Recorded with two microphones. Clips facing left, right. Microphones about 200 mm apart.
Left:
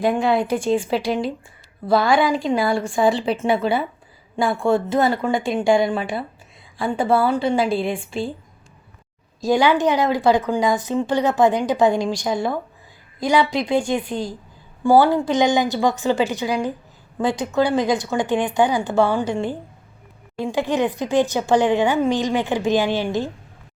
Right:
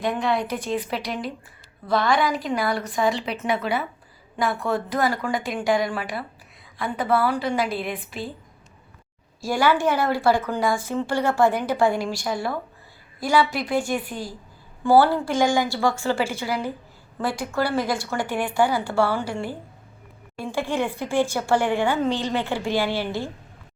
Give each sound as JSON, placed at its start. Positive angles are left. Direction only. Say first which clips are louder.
{"t": 0.0, "sound": "a woman's voice", "louder": "left 5 dB", "side_deg": 30}
{"t": 9.4, "sound": "a woman's voice", "louder": "left 4 dB", "side_deg": 20}